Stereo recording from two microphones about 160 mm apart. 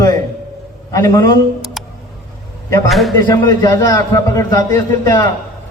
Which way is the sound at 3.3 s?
15° left (ahead or behind).